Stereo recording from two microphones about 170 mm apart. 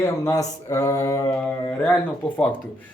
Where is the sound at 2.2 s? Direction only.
10° left (ahead or behind).